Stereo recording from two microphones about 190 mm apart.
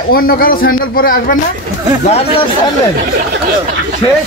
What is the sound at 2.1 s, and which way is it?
Speech, 35° left (ahead or behind).